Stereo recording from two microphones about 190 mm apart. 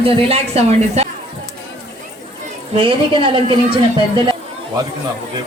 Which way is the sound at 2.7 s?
30° right (ahead or behind).